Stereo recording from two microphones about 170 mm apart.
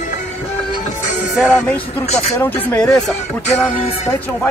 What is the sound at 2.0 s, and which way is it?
Speech, 40° left (ahead or behind).